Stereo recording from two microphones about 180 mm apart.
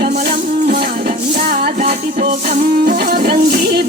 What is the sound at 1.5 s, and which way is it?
Music, 55° right (ahead or behind).